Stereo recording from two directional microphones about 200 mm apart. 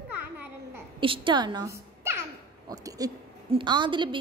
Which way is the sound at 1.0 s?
25° right (ahead or behind).